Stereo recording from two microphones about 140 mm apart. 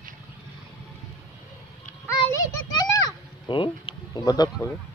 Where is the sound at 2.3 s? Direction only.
25° left (ahead or behind).